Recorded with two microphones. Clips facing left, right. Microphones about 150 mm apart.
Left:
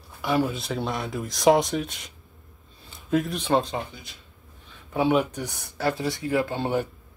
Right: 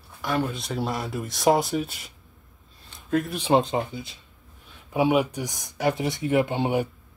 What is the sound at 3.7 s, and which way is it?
Speech, 25° right (ahead or behind).